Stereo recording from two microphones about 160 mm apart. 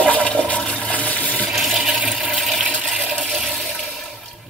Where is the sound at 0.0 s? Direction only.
10° left (ahead or behind).